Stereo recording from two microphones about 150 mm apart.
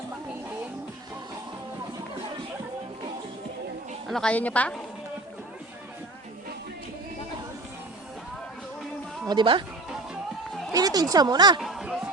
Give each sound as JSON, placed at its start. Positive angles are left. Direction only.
{"t": 4.0, "sound": "a woman's voice", "side_deg": 5}
{"t": 9.2, "sound": "speech", "side_deg": -30}
{"t": 10.7, "sound": "speech", "side_deg": -25}
{"t": 11.6, "sound": "chatter", "side_deg": 0}